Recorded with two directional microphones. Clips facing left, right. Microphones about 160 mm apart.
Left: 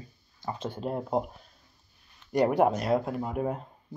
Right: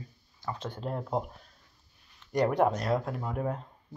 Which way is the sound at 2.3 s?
5° left (ahead or behind).